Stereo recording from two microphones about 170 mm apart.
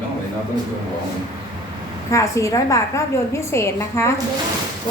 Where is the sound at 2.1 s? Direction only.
15° left (ahead or behind).